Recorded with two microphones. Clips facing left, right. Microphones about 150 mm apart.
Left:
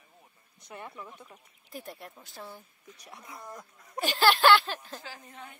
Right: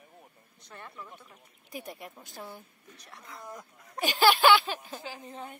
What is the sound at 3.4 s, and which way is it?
Speech, centre (ahead or behind).